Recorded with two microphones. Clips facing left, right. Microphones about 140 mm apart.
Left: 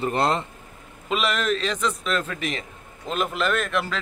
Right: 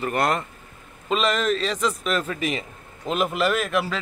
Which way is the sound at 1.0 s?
Centre (ahead or behind).